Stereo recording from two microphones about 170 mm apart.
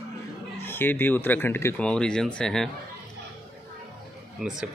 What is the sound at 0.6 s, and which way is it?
Speech, 10° left (ahead or behind).